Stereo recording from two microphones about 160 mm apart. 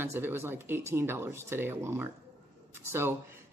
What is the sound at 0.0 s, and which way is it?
Speech, 15° right (ahead or behind).